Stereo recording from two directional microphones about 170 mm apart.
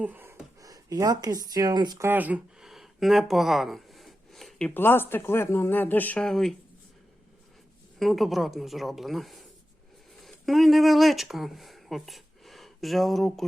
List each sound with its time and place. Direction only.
0.0 s speech: 10° right (ahead or behind)
2.0 s speech: 10° right (ahead or behind)
7.9 s speech: centre (ahead or behind)